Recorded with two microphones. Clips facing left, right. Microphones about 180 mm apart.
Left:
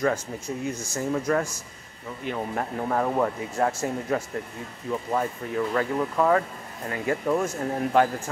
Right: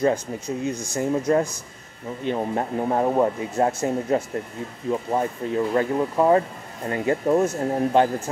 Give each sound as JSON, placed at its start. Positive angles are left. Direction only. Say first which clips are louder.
{"t": 0.0, "sound": "speech", "louder": "right 4 dB", "side_deg": -20}